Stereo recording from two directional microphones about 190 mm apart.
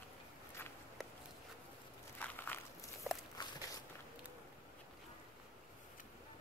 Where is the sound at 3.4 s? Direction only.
25° left (ahead or behind).